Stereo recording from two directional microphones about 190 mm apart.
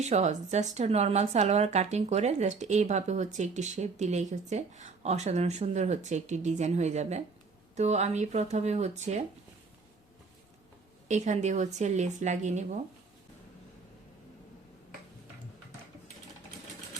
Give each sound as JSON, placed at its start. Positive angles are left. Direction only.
{"t": 0.0, "sound": "speech", "side_deg": -35}
{"t": 11.1, "sound": "speech", "side_deg": -40}